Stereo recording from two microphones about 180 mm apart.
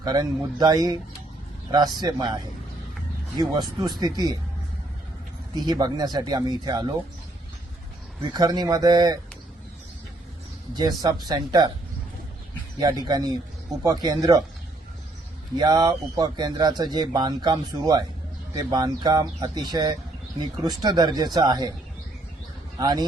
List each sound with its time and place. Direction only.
0.0 s speech: 20° right (ahead or behind)
2.0 s speech: 25° right (ahead or behind)
5.5 s speech: 25° right (ahead or behind)
8.3 s speech: 20° right (ahead or behind)
10.8 s speech: 20° right (ahead or behind)
12.8 s speech: 20° right (ahead or behind)
15.5 s speech: 20° right (ahead or behind)
22.8 s speech: 20° right (ahead or behind)